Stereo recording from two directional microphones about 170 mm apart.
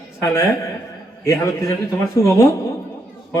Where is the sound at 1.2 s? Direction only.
20° left (ahead or behind).